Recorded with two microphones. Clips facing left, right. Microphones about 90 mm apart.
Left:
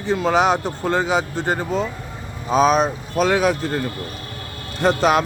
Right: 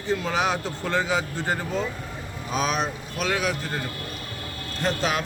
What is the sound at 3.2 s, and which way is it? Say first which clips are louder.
Speech: left 9 dB; 55° left (ahead or behind).